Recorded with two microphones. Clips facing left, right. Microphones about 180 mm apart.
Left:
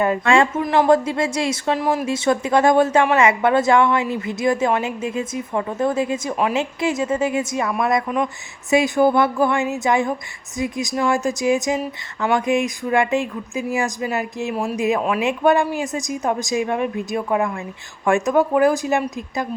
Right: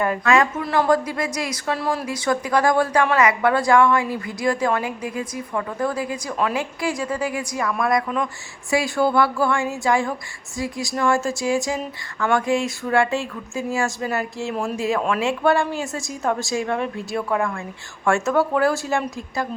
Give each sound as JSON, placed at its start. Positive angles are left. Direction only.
{"t": 0.0, "sound": "a woman's voice", "side_deg": 25}
{"t": 14.5, "sound": "speech", "side_deg": 5}
{"t": 14.8, "sound": "a woman's voice", "side_deg": 20}